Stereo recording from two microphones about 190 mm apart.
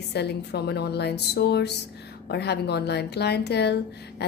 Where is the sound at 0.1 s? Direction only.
60° left (ahead or behind).